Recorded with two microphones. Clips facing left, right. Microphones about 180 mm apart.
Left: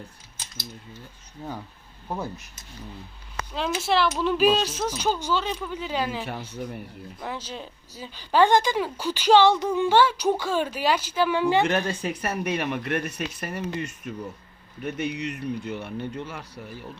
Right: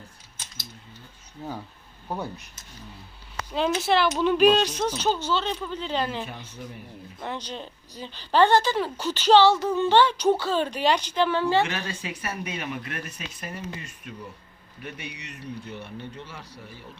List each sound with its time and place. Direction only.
2.0 s speech: centre (ahead or behind)
3.5 s a woman's voice: centre (ahead or behind)
6.2 s speech: 70° left (ahead or behind)
7.2 s a woman's voice: 5° left (ahead or behind)
11.6 s speech: 50° left (ahead or behind)
14.8 s speech: 45° left (ahead or behind)